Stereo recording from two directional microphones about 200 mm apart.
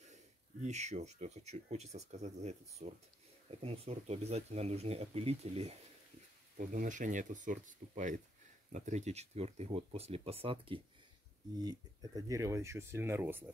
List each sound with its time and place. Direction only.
0.0 s speech: 35° right (ahead or behind)
6.5 s speech: 40° right (ahead or behind); by 13.5 s 10° right (ahead or behind)